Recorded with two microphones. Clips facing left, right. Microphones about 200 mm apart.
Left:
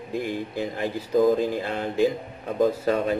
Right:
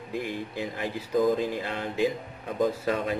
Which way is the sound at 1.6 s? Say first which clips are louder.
Left 4 dB; 40° left (ahead or behind).